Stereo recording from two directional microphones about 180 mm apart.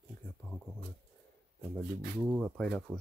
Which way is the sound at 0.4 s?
15° left (ahead or behind).